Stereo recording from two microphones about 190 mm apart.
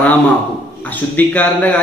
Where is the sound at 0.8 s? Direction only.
10° left (ahead or behind).